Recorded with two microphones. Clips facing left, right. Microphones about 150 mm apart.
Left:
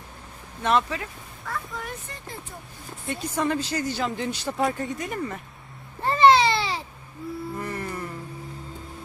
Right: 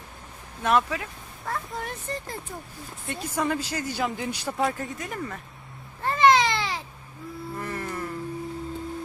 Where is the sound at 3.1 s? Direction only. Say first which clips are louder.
Left 1 dB; 5° right (ahead or behind).